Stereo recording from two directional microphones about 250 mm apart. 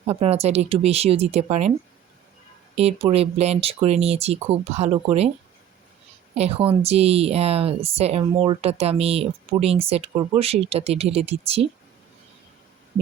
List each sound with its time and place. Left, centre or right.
0.1 s a woman's voice: right
2.7 s a woman's voice: right
6.3 s a woman's voice: right